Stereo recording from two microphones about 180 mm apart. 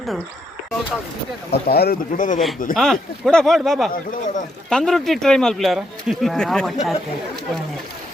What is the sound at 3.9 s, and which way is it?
Speech, 45° left (ahead or behind).